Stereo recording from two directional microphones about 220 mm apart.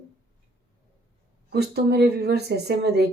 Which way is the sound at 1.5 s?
50° right (ahead or behind).